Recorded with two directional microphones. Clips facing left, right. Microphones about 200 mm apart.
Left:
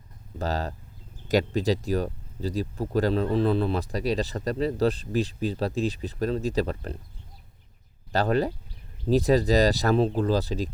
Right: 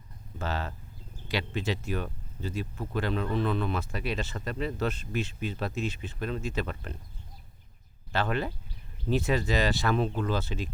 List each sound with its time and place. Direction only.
0.3 s speech: 40° left (ahead or behind)
8.1 s speech: 40° left (ahead or behind)